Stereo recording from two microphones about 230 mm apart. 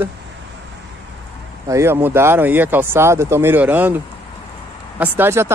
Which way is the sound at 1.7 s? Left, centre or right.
Centre.